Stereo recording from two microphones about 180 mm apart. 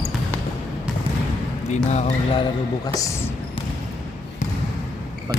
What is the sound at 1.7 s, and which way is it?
Speech, 40° left (ahead or behind).